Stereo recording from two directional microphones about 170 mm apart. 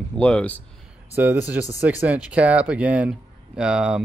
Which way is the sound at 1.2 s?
10° right (ahead or behind).